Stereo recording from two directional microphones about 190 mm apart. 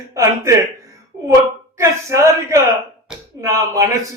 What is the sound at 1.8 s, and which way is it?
A man's voice, 15° right (ahead or behind).